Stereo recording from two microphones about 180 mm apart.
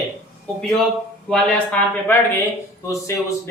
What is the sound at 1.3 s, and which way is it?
Speech, 5° left (ahead or behind).